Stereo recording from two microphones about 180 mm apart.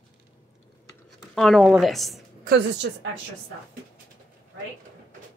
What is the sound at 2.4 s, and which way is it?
Speech, 75° right (ahead or behind).